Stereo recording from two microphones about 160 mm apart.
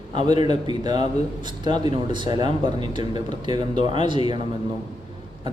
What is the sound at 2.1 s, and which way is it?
Speech, 30° right (ahead or behind).